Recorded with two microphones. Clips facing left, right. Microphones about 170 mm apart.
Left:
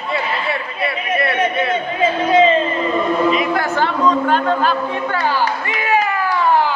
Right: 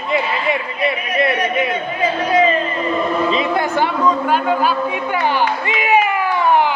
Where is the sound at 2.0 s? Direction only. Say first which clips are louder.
Left 2 dB; 25° left (ahead or behind).